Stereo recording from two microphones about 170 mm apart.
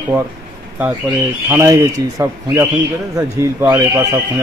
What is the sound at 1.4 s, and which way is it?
Speech, 15° right (ahead or behind).